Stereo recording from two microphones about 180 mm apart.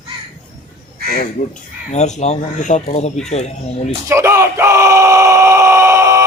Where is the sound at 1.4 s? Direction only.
45° left (ahead or behind).